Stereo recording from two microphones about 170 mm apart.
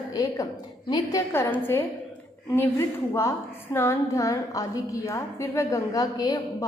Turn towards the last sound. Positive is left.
turn(degrees=20)  # may be behind; listen again after turning